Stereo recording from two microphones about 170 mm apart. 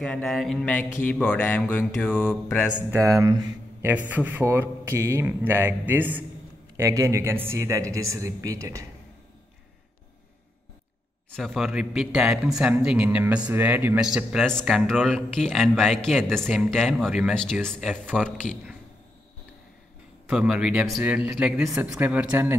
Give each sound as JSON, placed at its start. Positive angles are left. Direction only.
{"t": 0.0, "sound": "speech", "side_deg": 0}
{"t": 1.0, "sound": "mantra", "side_deg": 10}
{"t": 2.9, "sound": "speech", "side_deg": -20}
{"t": 4.1, "sound": "speech", "side_deg": -10}
{"t": 11.2, "sound": "speech", "side_deg": 0}
{"t": 20.2, "sound": "speech", "side_deg": -5}